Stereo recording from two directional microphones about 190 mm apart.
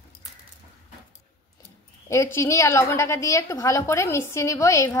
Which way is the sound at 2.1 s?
15° left (ahead or behind).